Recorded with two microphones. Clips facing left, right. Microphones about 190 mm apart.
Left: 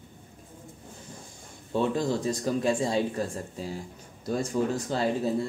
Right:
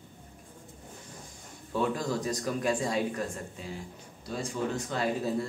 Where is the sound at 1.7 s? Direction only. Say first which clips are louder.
Left 3 dB; 25° left (ahead or behind).